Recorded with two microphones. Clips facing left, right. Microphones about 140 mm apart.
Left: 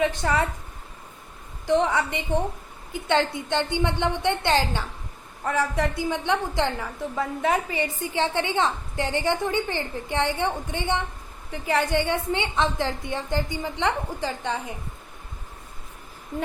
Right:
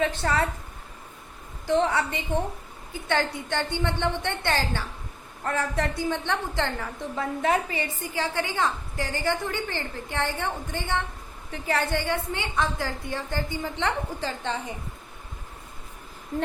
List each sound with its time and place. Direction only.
0.0 s a woman's voice: 15° left (ahead or behind)
1.6 s a woman's voice: 15° left (ahead or behind)